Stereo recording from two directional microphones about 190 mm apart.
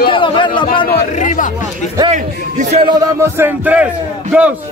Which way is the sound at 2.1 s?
35° right (ahead or behind).